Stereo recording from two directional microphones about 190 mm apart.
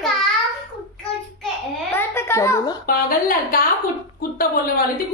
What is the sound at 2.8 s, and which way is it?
A woman's voice, 50° left (ahead or behind).